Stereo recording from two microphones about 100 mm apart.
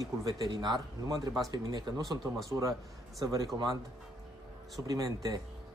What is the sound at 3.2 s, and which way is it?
Speech, 35° right (ahead or behind).